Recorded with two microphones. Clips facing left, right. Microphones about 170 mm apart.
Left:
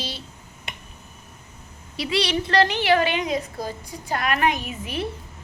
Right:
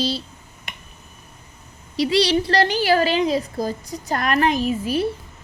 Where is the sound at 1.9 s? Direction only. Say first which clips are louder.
Right 6 dB; 30° right (ahead or behind).